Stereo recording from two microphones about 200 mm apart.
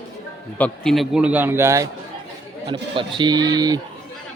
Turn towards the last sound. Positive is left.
turn(degrees=-20)  # may be behind; listen again after turning